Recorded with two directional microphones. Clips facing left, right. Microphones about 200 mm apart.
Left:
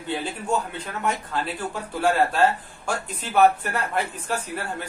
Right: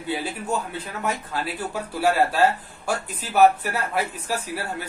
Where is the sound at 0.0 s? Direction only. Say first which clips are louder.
Right 1 dB; 5° right (ahead or behind).